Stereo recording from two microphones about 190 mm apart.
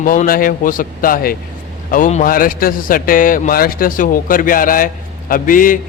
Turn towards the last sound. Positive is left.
turn(degrees=45)  # may be behind; listen again after turning